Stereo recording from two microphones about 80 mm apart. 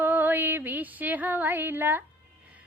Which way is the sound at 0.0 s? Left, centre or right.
Right.